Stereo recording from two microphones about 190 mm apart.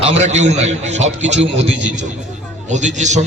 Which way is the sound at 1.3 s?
70° right (ahead or behind).